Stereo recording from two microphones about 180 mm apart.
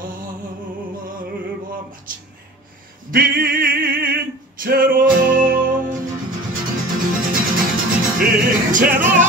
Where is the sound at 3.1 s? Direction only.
55° right (ahead or behind).